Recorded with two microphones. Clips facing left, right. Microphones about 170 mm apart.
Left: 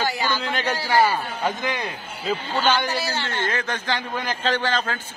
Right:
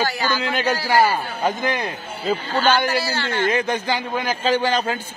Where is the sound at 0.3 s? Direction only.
5° right (ahead or behind).